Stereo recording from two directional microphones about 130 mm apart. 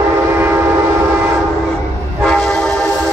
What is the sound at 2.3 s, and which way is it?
Train, 5° left (ahead or behind).